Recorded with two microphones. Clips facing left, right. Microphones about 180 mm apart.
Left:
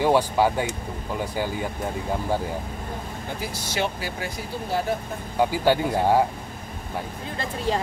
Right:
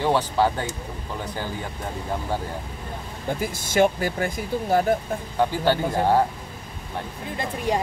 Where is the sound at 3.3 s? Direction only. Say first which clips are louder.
Right 8 dB; 50° right (ahead or behind).